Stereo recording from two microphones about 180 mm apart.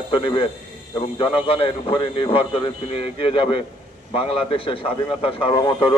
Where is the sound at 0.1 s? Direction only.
30° left (ahead or behind).